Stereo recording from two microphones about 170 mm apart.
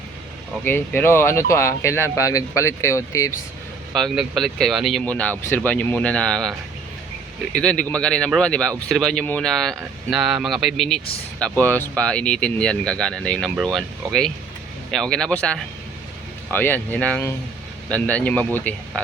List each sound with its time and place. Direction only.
0.6 s speech: 10° left (ahead or behind)
3.9 s speech: centre (ahead or behind)
7.5 s speech: 5° left (ahead or behind)